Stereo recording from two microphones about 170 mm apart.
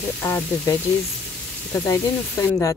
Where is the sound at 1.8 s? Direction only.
20° left (ahead or behind).